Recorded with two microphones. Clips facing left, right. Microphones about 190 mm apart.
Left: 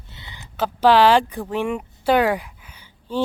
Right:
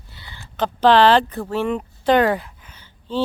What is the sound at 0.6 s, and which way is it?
A woman's voice, 10° left (ahead or behind).